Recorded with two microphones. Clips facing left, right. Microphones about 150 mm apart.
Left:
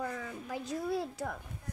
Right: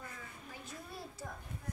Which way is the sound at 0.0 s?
90° left.